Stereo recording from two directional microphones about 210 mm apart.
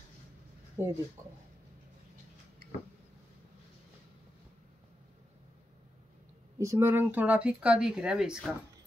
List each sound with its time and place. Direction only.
0.8 s speech: 10° right (ahead or behind)
1.2 s speech: 40° right (ahead or behind)
6.6 s speech: 10° right (ahead or behind)